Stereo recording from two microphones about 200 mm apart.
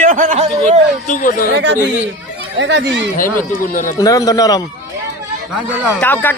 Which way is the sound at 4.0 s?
15° left (ahead or behind).